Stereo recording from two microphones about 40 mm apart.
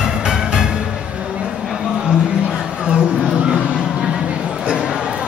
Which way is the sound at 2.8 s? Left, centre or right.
Right.